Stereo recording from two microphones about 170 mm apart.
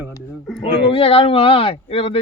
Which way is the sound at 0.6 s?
35° left (ahead or behind).